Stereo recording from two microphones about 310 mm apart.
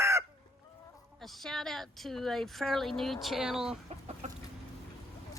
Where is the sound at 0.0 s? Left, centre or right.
Centre.